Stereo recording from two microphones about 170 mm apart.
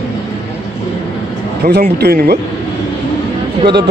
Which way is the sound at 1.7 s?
70° right (ahead or behind).